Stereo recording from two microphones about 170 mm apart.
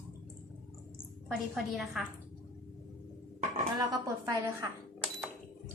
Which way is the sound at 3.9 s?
20° right (ahead or behind).